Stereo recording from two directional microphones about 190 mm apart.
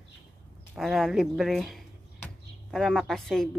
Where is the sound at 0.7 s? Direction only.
Centre (ahead or behind).